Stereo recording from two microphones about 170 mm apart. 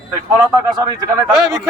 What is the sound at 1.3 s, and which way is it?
Speech, centre (ahead or behind).